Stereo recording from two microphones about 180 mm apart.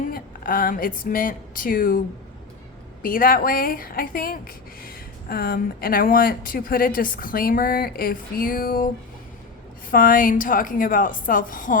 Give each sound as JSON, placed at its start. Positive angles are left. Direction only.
{"t": 0.1, "sound": "speech", "side_deg": 50}
{"t": 3.0, "sound": "speech", "side_deg": 50}
{"t": 9.9, "sound": "speech", "side_deg": 50}